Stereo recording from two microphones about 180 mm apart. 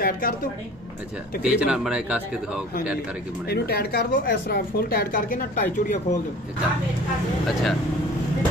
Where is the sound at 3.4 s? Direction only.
60° left (ahead or behind).